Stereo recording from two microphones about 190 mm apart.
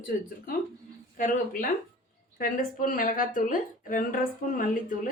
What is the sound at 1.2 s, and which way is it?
Speech, 45° left (ahead or behind).